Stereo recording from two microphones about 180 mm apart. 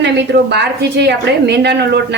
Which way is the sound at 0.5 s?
70° right (ahead or behind).